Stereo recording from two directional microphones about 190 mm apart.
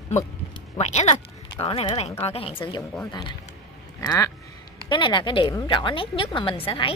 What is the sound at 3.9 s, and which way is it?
A woman's voice, 15° left (ahead or behind).